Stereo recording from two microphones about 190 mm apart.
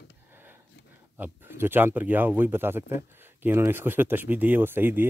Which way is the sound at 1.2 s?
10° right (ahead or behind).